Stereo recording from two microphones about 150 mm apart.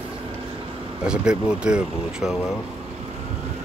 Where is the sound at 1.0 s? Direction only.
5° right (ahead or behind).